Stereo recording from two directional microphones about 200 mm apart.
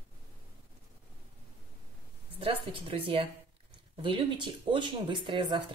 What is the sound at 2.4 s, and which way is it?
Speech, 25° right (ahead or behind).